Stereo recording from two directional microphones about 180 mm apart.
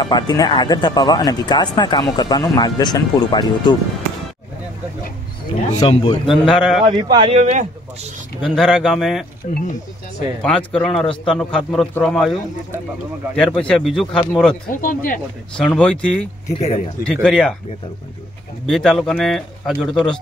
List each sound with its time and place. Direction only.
0.0 s speech: 25° left (ahead or behind)
5.8 s speech: 25° left (ahead or behind)
6.4 s a man's voice: centre (ahead or behind)
6.9 s speech: 25° right (ahead or behind)
7.3 s speech: 45° right (ahead or behind)
8.5 s a man's voice: centre (ahead or behind)
9.4 s speech: 45° left (ahead or behind)
10.4 s a man's voice: 5° left (ahead or behind)
13.6 s a man's voice: 5° left (ahead or behind)
14.8 s speech: 50° left (ahead or behind)
15.5 s a man's voice: 5° left (ahead or behind)
16.4 s speech: 35° left (ahead or behind)
17.0 s a man's voice: 5° left (ahead or behind)
18.7 s a man's voice: centre (ahead or behind)